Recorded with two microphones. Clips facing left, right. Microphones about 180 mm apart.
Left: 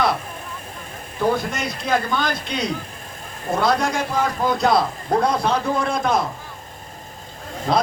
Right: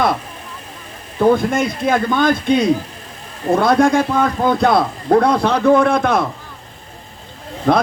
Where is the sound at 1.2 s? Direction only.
50° right (ahead or behind).